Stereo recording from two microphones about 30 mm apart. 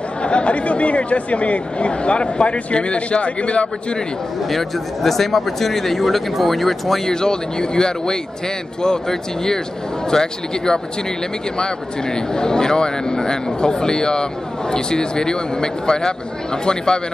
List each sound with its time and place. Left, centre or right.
0.2 s speech: left
4.5 s speech: centre
7.1 s speech: left